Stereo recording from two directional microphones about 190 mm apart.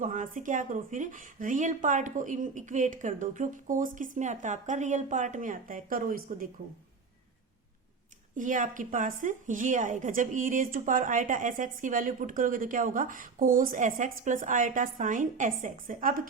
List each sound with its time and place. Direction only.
0.0 s speech: 45° right (ahead or behind)
8.4 s speech: 40° right (ahead or behind)